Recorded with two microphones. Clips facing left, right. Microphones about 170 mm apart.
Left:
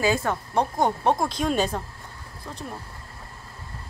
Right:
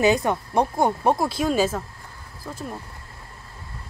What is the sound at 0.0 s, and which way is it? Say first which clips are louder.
A woman's voice: right 4 dB; 20° right (ahead or behind).